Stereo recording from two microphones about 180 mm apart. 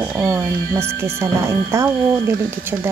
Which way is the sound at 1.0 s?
15° right (ahead or behind).